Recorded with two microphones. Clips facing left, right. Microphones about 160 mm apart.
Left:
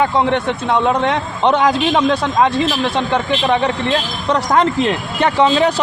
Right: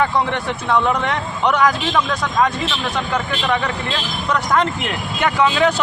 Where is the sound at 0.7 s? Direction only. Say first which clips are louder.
Left 2 dB; 25° left (ahead or behind).